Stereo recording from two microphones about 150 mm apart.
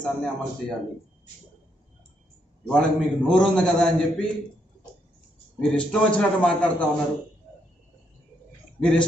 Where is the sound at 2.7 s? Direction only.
5° left (ahead or behind).